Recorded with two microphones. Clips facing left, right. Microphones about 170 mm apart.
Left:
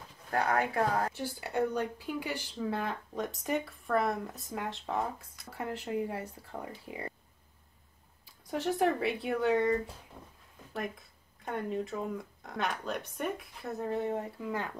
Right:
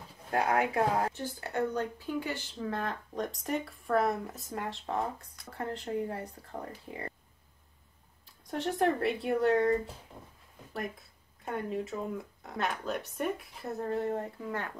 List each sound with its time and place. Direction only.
0.3 s speech: 20° right (ahead or behind)
1.1 s speech: 10° left (ahead or behind)
8.5 s speech: 5° left (ahead or behind)
11.4 s speech: 5° right (ahead or behind)